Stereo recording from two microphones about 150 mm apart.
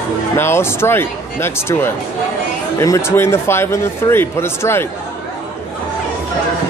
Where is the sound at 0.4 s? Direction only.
15° left (ahead or behind).